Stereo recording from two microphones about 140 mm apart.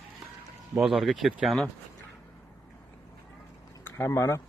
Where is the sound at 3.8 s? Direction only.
15° left (ahead or behind).